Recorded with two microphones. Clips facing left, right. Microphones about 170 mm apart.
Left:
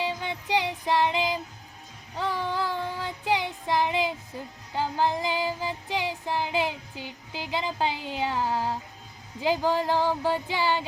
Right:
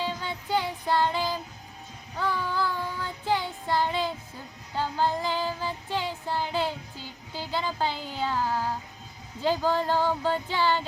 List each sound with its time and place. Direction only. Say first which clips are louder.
0.0 s music: left 2 dB; 15° left (ahead or behind)
2.1 s child singing: even; 20° left (ahead or behind)